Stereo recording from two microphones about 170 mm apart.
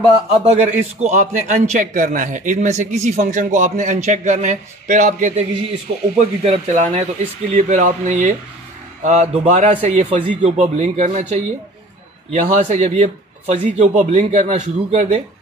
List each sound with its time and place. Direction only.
1.0 s a man's voice: 45° right (ahead or behind)